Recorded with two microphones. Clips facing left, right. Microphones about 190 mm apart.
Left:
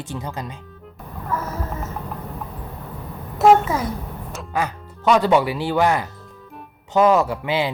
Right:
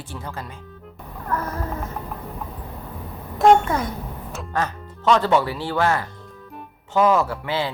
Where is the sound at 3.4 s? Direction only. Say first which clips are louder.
Left 1 dB; 5° left (ahead or behind).